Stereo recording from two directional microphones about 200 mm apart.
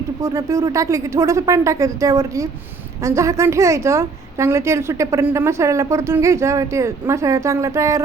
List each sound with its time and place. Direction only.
0.2 s a woman's voice: 15° right (ahead or behind)